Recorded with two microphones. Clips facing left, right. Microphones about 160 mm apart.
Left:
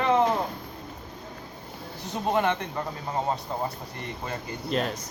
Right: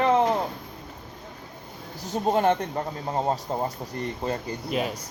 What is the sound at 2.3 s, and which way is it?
Speech, 40° right (ahead or behind).